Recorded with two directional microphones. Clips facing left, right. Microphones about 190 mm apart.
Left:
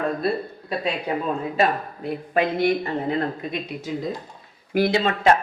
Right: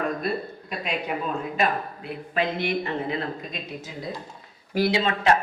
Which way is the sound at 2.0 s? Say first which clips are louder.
Left 5 dB; 40° left (ahead or behind).